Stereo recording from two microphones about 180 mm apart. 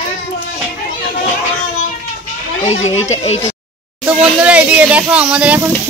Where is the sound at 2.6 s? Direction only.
40° left (ahead or behind).